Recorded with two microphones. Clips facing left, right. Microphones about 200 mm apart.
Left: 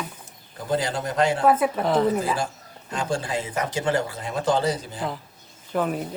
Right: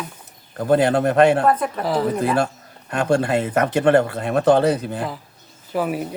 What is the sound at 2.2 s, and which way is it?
Speech, 60° right (ahead or behind).